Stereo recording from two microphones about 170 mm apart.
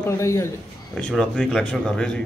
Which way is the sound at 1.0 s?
5° left (ahead or behind).